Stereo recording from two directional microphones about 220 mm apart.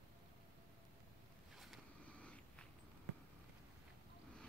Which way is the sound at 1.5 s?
Centre (ahead or behind).